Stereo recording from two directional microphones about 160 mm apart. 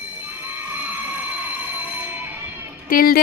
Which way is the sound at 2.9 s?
65° left (ahead or behind).